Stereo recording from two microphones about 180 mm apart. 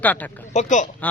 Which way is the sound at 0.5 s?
40° left (ahead or behind).